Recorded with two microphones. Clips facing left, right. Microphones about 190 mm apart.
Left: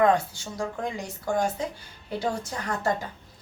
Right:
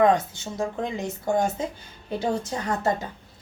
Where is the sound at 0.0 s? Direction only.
20° right (ahead or behind).